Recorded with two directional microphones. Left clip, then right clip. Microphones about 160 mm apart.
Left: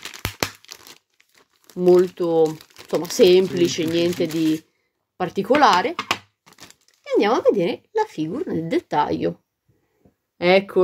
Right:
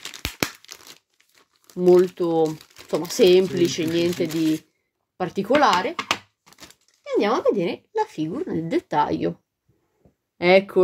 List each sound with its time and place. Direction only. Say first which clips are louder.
0.7 s tearing: left 1 dB; 20° left (ahead or behind)
2.0 s speech: left 1 dB; centre (ahead or behind)
2.6 s typing: left 2 dB; 30° left (ahead or behind)
3.1 s speech: left 2 dB; 5° left (ahead or behind)
7.1 s speech: left 3 dB; 20° left (ahead or behind); by 9.3 s centre (ahead or behind)
10.3 s speech: even; centre (ahead or behind)